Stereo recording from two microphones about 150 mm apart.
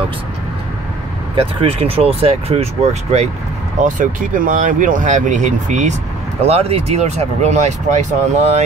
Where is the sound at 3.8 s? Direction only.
60° right (ahead or behind).